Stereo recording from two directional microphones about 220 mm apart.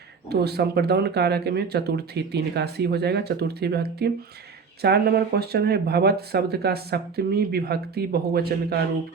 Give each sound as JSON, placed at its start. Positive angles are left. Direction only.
{"t": 0.3, "sound": "speech", "side_deg": -45}